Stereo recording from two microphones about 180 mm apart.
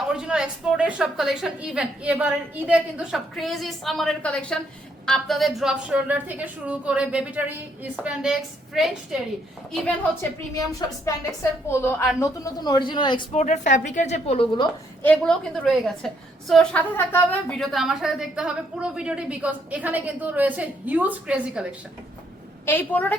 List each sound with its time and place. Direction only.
0.1 s a woman's voice: 5° right (ahead or behind)
10.5 s a woman's voice: 20° left (ahead or behind)
13.3 s a woman's voice: 40° left (ahead or behind)
15.0 s a woman's voice: 5° left (ahead or behind)
22.6 s a woman's voice: 10° left (ahead or behind)